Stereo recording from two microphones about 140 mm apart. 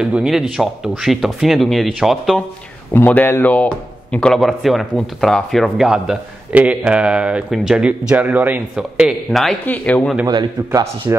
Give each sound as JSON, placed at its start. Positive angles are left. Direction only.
{"t": 0.0, "sound": "speech", "side_deg": -5}
{"t": 2.9, "sound": "speech", "side_deg": 15}
{"t": 10.2, "sound": "speech", "side_deg": -25}